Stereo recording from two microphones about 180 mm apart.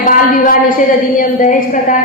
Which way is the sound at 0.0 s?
45° left (ahead or behind).